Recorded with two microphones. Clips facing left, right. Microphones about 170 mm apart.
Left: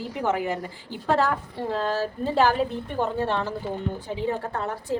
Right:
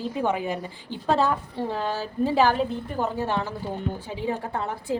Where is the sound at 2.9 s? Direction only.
5° right (ahead or behind).